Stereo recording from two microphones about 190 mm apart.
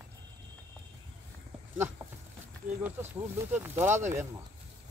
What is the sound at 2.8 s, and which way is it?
Speech, 10° right (ahead or behind).